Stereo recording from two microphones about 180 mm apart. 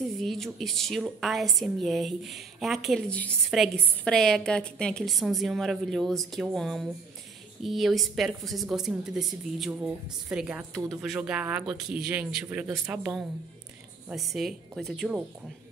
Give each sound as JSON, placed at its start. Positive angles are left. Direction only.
{"t": 0.2, "sound": "a woman's voice", "side_deg": 0}